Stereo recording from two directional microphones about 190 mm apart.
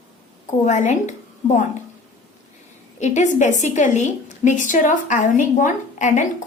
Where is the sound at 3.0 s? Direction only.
40° left (ahead or behind).